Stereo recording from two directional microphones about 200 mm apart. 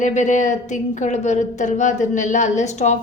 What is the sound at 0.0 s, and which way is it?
A woman's voice, 35° left (ahead or behind).